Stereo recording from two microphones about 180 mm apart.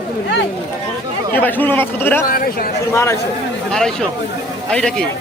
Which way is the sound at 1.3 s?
10° left (ahead or behind).